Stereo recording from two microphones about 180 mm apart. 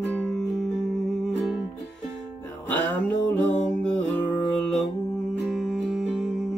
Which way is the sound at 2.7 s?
5° left (ahead or behind).